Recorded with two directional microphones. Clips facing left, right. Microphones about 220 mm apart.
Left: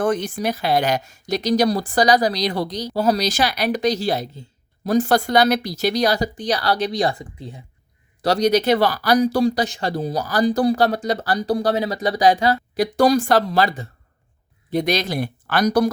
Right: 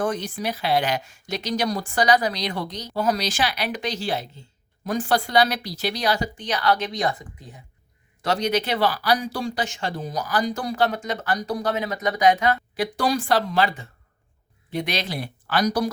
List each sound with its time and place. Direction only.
0.0 s speech: 50° left (ahead or behind)